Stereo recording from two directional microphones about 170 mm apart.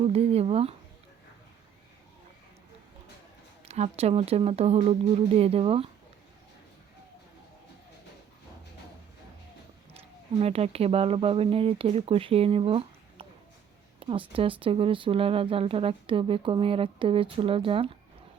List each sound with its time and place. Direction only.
0.0 s speech: 35° right (ahead or behind)
3.7 s speech: 40° right (ahead or behind)
10.4 s speech: 35° right (ahead or behind)